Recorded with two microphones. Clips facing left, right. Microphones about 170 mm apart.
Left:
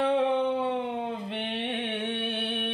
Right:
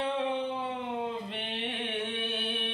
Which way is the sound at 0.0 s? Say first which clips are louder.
Left 6 dB; 60° left (ahead or behind).